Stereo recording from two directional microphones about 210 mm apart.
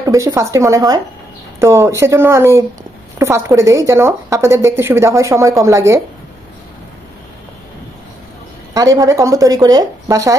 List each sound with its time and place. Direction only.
0.0 s a woman's voice: 15° right (ahead or behind)
8.7 s a woman's voice: 15° right (ahead or behind)